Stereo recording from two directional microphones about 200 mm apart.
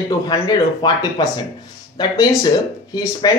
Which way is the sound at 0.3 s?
20° left (ahead or behind).